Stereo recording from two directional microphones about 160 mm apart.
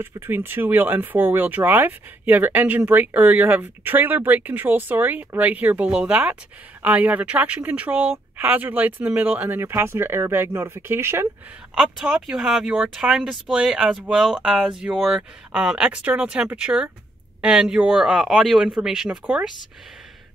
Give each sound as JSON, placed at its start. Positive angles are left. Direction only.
{"t": 0.0, "sound": "speech", "side_deg": -15}
{"t": 11.7, "sound": "speech", "side_deg": -5}